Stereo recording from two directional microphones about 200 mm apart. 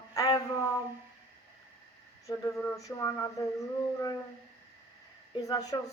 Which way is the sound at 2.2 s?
10° left (ahead or behind).